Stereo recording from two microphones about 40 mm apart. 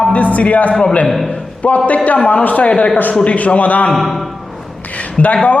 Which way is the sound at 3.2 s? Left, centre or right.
Left.